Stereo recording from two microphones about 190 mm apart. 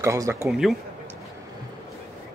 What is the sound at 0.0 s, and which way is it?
Speech, 15° right (ahead or behind).